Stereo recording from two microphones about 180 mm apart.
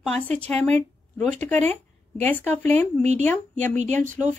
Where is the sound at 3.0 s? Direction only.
40° right (ahead or behind).